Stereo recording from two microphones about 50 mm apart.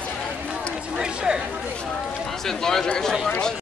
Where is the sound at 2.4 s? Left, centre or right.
Centre.